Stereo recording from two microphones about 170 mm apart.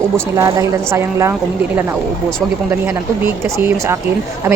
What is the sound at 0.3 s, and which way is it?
Speech, 15° right (ahead or behind).